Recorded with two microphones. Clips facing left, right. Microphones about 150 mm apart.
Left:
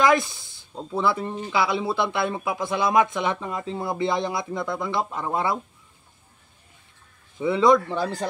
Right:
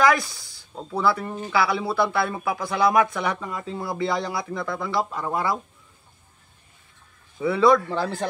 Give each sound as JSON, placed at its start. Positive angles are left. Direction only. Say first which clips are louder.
{"t": 0.0, "sound": "speech", "louder": "even", "side_deg": 20}
{"t": 7.3, "sound": "speech", "louder": "even", "side_deg": 20}